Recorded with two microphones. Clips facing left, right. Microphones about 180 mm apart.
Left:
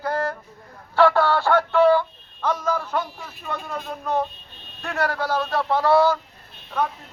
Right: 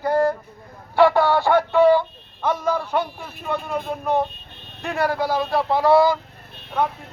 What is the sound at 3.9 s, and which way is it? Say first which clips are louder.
Speech: right 2 dB; 20° right (ahead or behind).